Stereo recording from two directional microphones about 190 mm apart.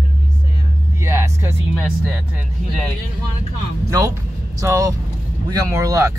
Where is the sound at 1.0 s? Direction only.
15° right (ahead or behind).